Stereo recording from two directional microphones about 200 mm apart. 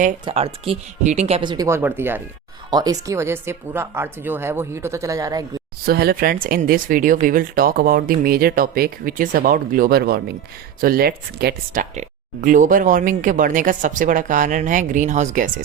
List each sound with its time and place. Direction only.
0.3 s speech: 30° right (ahead or behind)
5.8 s speech: 50° right (ahead or behind)